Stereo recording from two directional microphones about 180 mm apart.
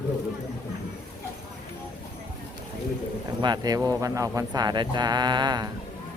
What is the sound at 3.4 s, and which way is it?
Speech, 25° right (ahead or behind).